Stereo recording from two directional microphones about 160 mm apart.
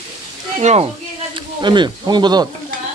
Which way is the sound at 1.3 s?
30° right (ahead or behind).